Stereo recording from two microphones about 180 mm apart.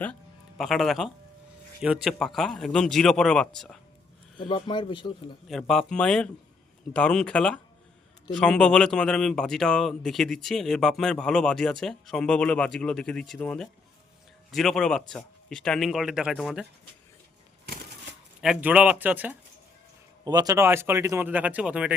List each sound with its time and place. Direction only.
0.0 s a man's voice: 5° left (ahead or behind)
4.4 s speech: 25° left (ahead or behind)
5.5 s a man's voice: centre (ahead or behind)
18.4 s speech: 5° right (ahead or behind)
20.2 s speech: 20° right (ahead or behind); by 21.9 s 5° right (ahead or behind)